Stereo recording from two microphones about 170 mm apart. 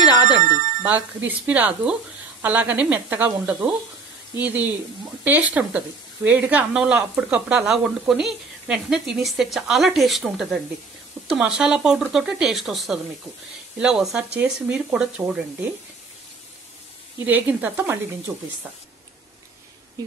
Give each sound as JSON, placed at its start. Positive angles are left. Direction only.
{"t": 0.4, "sound": "bicycle bell", "side_deg": -50}
{"t": 0.8, "sound": "a woman's voice", "side_deg": -10}
{"t": 17.2, "sound": "speech", "side_deg": -10}